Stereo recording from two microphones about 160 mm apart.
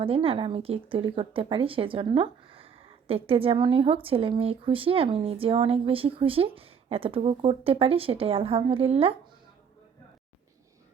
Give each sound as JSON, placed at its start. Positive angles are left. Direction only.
{"t": 0.0, "sound": "speech", "side_deg": -35}